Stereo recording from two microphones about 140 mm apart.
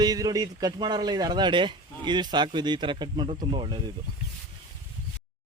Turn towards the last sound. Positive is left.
turn(degrees=-35)  # may be behind; listen again after turning